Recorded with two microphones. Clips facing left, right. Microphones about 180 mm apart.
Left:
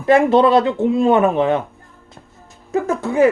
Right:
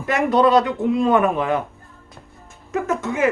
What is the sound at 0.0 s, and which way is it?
Speech, 30° left (ahead or behind).